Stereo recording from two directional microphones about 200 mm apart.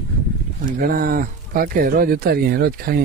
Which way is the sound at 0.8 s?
45° right (ahead or behind).